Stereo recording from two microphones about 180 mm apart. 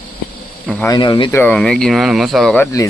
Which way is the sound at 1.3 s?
10° left (ahead or behind).